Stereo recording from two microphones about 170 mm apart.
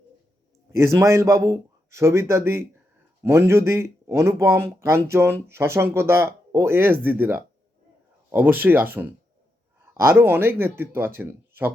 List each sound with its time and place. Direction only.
0.7 s speech: 15° right (ahead or behind)